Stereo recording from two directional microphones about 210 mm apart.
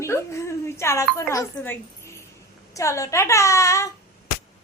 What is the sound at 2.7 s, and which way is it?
A woman's voice, 15° left (ahead or behind).